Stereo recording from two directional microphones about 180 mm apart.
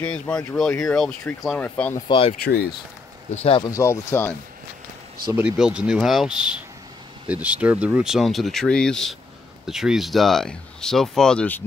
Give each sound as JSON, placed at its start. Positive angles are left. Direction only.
{"t": 0.0, "sound": "speech", "side_deg": 5}
{"t": 2.0, "sound": "speech", "side_deg": 25}
{"t": 2.4, "sound": "speech", "side_deg": 60}
{"t": 3.3, "sound": "speech", "side_deg": 35}
{"t": 3.7, "sound": "speech", "side_deg": 15}
{"t": 5.3, "sound": "speech", "side_deg": -5}